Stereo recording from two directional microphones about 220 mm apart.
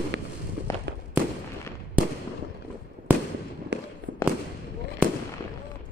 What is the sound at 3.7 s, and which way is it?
Fireworks, 50° right (ahead or behind).